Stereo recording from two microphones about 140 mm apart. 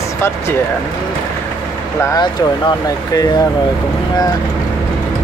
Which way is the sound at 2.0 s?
25° left (ahead or behind).